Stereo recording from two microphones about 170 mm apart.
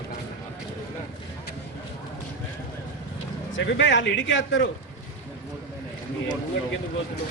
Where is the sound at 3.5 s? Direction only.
90° left.